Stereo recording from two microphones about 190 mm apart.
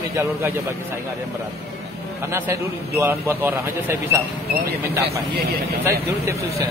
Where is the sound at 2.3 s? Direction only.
15° right (ahead or behind).